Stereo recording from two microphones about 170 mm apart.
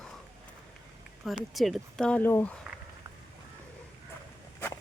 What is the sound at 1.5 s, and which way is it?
Speech, centre (ahead or behind).